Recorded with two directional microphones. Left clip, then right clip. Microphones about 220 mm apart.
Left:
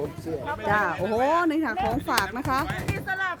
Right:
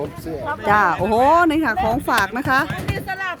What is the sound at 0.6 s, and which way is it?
Speech, 25° right (ahead or behind).